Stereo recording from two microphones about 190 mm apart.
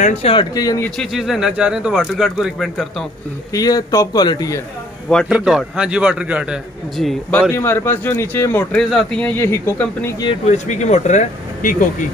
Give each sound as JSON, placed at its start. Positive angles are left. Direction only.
{"t": 0.0, "sound": "speech", "side_deg": 35}
{"t": 3.5, "sound": "a man's voice", "side_deg": 20}
{"t": 5.3, "sound": "speech", "side_deg": -5}
{"t": 7.5, "sound": "speech", "side_deg": 10}
{"t": 10.5, "sound": "speech", "side_deg": 40}